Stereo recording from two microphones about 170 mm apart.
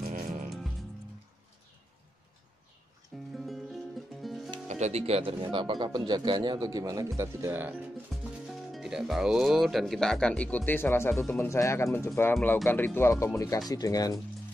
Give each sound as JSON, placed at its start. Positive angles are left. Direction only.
{"t": 0.0, "sound": "music", "side_deg": -55}
{"t": 0.5, "sound": "music", "side_deg": 0}
{"t": 3.3, "sound": "music", "side_deg": 0}
{"t": 4.6, "sound": "speech", "side_deg": -40}
{"t": 8.2, "sound": "speech", "side_deg": 0}